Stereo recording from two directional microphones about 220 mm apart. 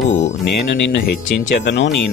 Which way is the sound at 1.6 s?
55° left (ahead or behind).